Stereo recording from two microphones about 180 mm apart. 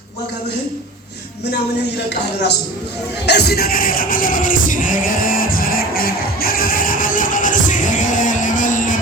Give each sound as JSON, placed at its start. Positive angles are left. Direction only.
{"t": 2.0, "sound": "a man's voice", "side_deg": 70}
{"t": 3.2, "sound": "music", "side_deg": 65}